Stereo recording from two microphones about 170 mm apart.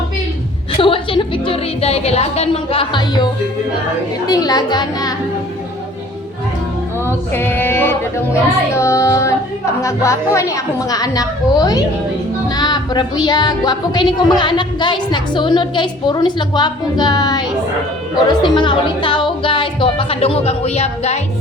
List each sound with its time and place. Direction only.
0.8 s music: 30° left (ahead or behind)
4.3 s music: 20° left (ahead or behind)
7.3 s music: 10° left (ahead or behind)
18.3 s speech: 25° left (ahead or behind)